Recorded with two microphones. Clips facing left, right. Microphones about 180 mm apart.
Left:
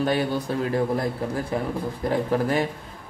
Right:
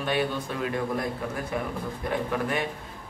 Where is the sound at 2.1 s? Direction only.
35° left (ahead or behind).